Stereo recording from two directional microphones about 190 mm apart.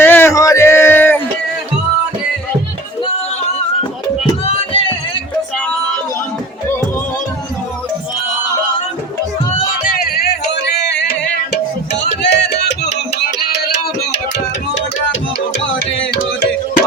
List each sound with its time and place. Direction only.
0.0 s a sound: 10° left (ahead or behind)
4.4 s music: 30° left (ahead or behind)
9.8 s music: 50° left (ahead or behind)
15.7 s music: 75° left (ahead or behind)